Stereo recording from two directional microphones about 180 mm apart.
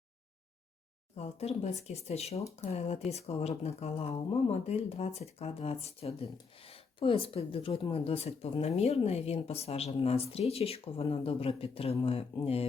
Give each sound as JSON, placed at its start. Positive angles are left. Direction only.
{"t": 1.1, "sound": "speech", "side_deg": 35}